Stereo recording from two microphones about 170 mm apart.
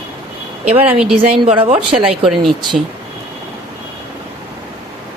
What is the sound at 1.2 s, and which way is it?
Speech, 35° right (ahead or behind).